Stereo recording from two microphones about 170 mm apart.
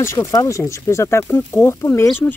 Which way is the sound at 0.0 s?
15° left (ahead or behind).